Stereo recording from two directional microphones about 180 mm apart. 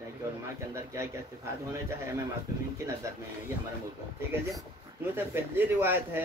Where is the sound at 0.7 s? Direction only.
15° right (ahead or behind).